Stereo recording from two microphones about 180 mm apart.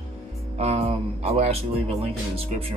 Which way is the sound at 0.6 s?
35° right (ahead or behind).